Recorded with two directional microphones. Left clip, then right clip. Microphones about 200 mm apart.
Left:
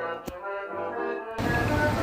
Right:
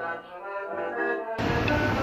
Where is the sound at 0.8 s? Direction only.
25° right (ahead or behind).